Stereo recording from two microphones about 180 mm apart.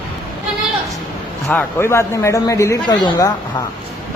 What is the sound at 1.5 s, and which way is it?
A woman's voice, 10° left (ahead or behind).